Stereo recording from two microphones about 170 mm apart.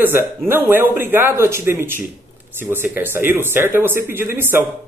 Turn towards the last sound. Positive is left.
turn(degrees=-15)  # may be behind; listen again after turning